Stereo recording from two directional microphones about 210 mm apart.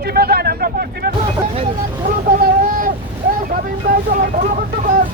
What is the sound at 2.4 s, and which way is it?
Boat, 45° right (ahead or behind).